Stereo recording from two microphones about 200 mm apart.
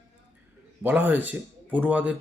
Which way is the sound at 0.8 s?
10° right (ahead or behind).